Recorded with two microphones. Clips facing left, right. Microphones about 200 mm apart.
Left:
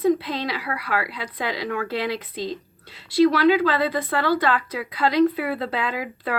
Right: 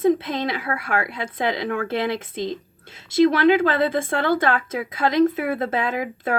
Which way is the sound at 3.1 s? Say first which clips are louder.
Right 1 dB; 50° right (ahead or behind).